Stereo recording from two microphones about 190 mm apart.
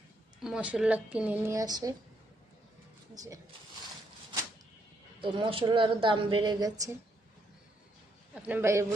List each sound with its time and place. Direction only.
0.4 s speech: 5° right (ahead or behind)
5.2 s a woman's voice: 25° right (ahead or behind)
8.4 s speech: 10° right (ahead or behind)